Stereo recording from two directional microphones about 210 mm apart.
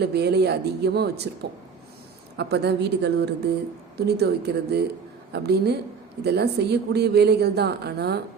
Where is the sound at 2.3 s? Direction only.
55° right (ahead or behind).